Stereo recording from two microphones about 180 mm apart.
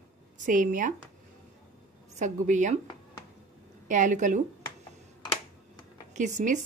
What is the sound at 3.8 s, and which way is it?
Speech, 45° right (ahead or behind).